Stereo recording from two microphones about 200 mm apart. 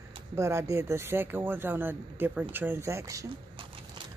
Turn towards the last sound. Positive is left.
turn(degrees=-15)  # may be behind; listen again after turning